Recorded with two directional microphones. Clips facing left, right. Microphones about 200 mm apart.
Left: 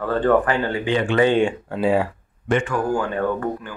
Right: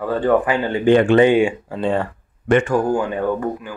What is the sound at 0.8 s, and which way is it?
Speech, 50° right (ahead or behind).